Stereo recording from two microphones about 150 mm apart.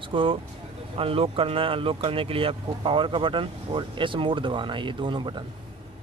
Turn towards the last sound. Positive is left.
turn(degrees=-30)  # may be behind; listen again after turning